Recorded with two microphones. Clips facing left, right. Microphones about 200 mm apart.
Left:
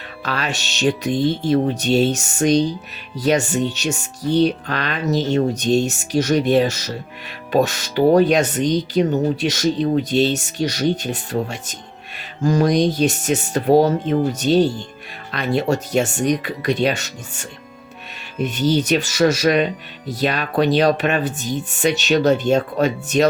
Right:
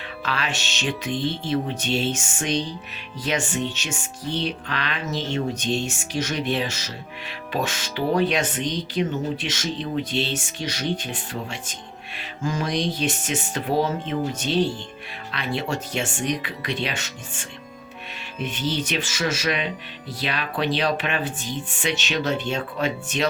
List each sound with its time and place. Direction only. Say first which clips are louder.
0.2 s speech: left 4 dB; 40° left (ahead or behind)